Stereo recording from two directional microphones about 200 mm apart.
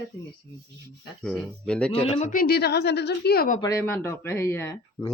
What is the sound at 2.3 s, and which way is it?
Speech, 50° left (ahead or behind).